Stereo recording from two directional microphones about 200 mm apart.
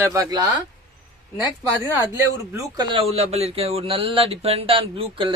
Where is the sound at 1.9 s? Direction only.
15° right (ahead or behind).